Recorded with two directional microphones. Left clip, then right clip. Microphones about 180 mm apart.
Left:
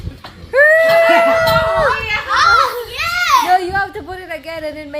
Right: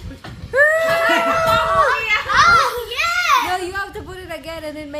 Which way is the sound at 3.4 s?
10° left (ahead or behind).